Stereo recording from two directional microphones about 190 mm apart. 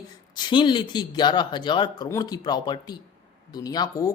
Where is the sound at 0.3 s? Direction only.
25° left (ahead or behind).